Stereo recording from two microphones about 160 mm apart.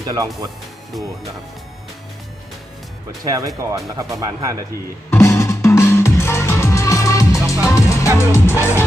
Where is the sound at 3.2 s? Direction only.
20° right (ahead or behind).